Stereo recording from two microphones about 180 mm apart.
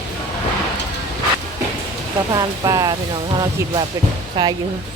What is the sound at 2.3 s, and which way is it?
Speech, 20° right (ahead or behind).